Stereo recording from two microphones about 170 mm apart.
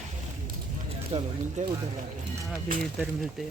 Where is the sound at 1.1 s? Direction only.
40° right (ahead or behind).